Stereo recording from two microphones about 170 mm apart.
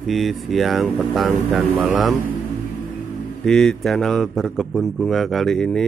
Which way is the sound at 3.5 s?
Centre (ahead or behind).